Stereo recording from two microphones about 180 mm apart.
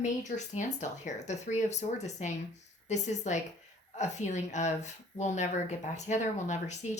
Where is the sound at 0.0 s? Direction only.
40° left (ahead or behind).